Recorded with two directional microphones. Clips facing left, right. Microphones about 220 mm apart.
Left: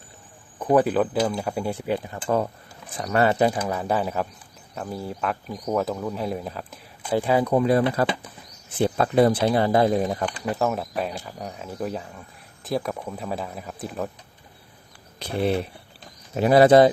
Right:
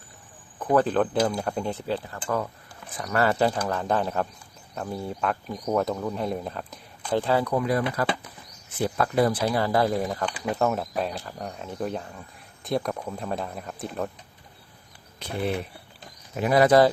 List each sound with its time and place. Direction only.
0.6 s speech: 15° left (ahead or behind)
2.2 s speech: 30° left (ahead or behind); by 7.5 s 15° left (ahead or behind)
7.5 s speech: 25° left (ahead or behind)
10.5 s speech: centre (ahead or behind)
16.3 s speech: 30° left (ahead or behind)